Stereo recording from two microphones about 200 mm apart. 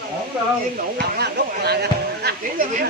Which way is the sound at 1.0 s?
55° right (ahead or behind).